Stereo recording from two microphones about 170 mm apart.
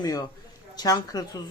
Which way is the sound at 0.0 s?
20° left (ahead or behind).